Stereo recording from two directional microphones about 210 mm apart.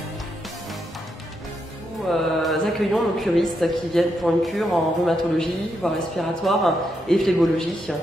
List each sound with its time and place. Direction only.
2.4 s a man's voice: centre (ahead or behind)